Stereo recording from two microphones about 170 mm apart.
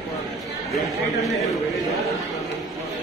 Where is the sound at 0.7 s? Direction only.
Centre (ahead or behind).